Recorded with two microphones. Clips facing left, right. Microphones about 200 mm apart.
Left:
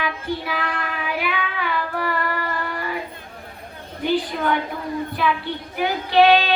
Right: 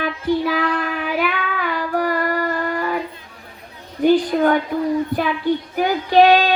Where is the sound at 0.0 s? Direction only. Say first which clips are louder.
Right 7 dB; 50° right (ahead or behind).